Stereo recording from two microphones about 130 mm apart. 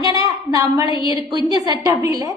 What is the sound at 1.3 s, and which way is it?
Speech, 30° right (ahead or behind).